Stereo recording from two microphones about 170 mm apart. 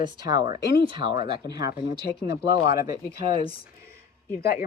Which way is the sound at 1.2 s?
70° left (ahead or behind).